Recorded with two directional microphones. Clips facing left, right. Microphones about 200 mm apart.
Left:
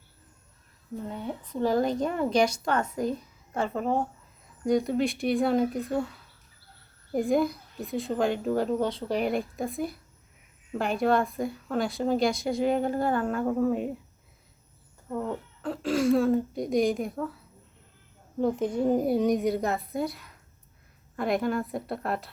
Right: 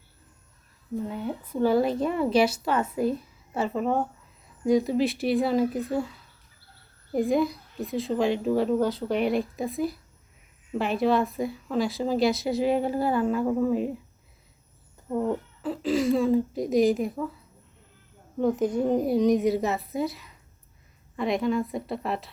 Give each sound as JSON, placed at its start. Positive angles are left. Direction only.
{"t": 1.0, "sound": "a woman's voice", "side_deg": -5}
{"t": 7.1, "sound": "a woman's voice", "side_deg": 0}
{"t": 15.1, "sound": "a sound", "side_deg": -15}
{"t": 15.6, "sound": "a woman's voice", "side_deg": 0}
{"t": 18.3, "sound": "a woman's voice", "side_deg": 0}